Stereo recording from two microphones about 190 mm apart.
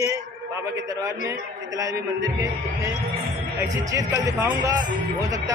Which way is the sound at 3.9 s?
15° right (ahead or behind).